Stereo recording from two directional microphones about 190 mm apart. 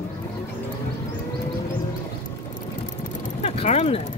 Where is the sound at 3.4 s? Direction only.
35° left (ahead or behind).